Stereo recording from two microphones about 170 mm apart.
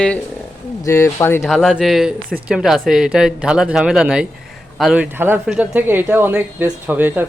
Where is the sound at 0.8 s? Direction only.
15° left (ahead or behind).